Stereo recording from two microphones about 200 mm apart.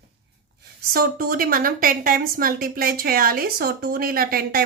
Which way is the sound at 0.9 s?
45° right (ahead or behind).